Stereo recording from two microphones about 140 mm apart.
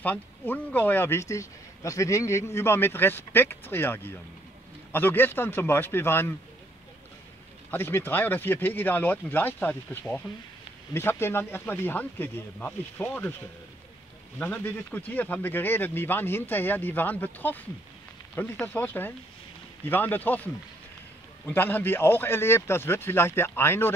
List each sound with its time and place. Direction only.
0.0 s speech: 15° left (ahead or behind)
7.7 s speech: 15° left (ahead or behind)
14.4 s speech: 10° left (ahead or behind)